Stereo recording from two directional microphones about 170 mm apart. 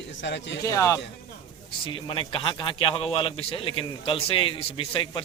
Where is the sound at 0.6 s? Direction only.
20° left (ahead or behind).